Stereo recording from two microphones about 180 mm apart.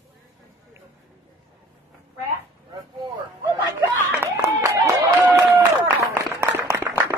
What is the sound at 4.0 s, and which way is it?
Clapping, 10° right (ahead or behind).